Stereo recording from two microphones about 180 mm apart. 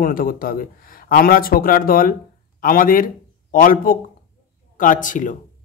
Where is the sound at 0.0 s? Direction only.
50° left (ahead or behind).